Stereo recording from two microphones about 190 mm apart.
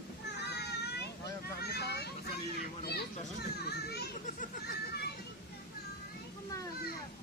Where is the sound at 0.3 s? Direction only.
60° left (ahead or behind).